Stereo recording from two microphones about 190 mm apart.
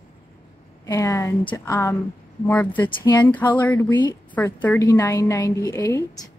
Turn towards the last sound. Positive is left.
turn(degrees=20)  # may be behind; listen again after turning